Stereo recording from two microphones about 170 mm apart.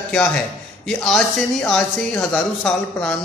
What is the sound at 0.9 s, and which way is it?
A man's voice, 5° left (ahead or behind).